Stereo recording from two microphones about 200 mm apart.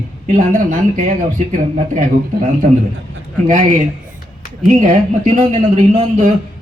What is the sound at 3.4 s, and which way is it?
A man's voice, 40° right (ahead or behind).